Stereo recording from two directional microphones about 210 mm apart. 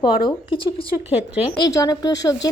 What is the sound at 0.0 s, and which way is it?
A woman's voice, 20° left (ahead or behind).